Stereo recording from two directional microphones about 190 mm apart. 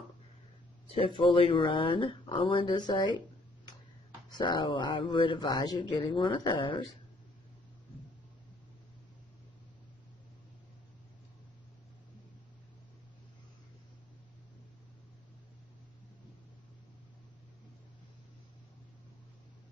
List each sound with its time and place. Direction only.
0.8 s speech: 30° left (ahead or behind)